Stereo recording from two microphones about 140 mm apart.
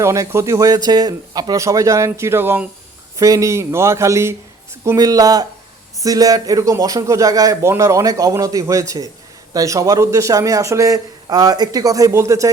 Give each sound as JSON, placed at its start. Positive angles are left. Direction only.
{"t": 0.0, "sound": "a man's voice", "side_deg": -20}